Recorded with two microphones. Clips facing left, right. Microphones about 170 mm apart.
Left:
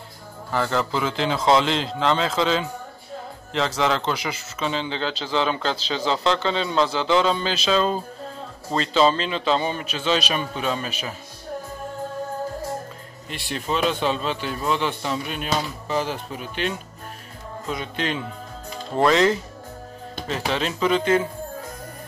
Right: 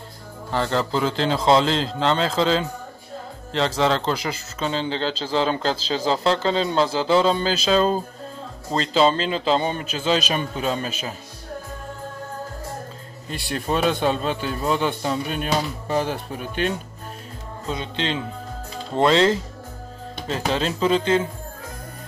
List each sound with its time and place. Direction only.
0.5 s speech: 30° right (ahead or behind)
13.3 s a man's voice: 45° right (ahead or behind)
17.6 s speech: 25° right (ahead or behind)